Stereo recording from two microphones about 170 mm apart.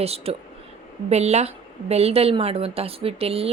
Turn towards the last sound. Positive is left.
turn(degrees=-35)  # may be behind; listen again after turning